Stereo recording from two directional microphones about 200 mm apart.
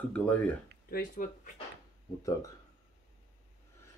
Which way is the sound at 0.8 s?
45° left (ahead or behind).